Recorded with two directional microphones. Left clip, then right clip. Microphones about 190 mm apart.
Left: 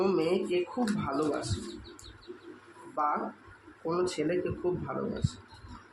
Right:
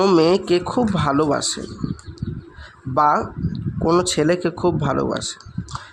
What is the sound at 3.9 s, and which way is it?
Speech, 65° right (ahead or behind).